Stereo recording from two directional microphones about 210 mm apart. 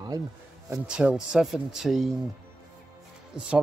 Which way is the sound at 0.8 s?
5° right (ahead or behind).